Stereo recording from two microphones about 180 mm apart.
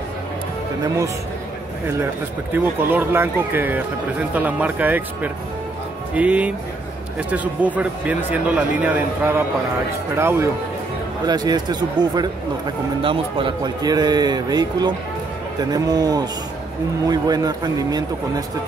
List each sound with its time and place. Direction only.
2.5 s a man's voice: 10° right (ahead or behind)